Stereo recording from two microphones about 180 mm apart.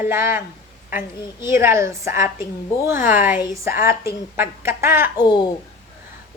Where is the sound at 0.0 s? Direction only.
15° right (ahead or behind).